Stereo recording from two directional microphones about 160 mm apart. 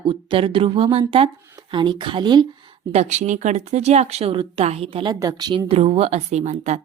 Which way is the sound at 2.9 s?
45° right (ahead or behind).